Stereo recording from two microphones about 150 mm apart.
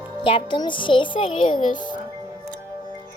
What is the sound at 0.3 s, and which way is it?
A child's voice, 35° left (ahead or behind).